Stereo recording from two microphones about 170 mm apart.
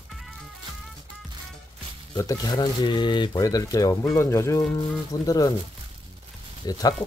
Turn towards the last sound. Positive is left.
turn(degrees=25)  # may be behind; listen again after turning